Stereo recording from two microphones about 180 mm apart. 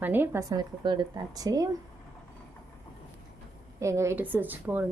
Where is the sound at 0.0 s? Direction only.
10° right (ahead or behind).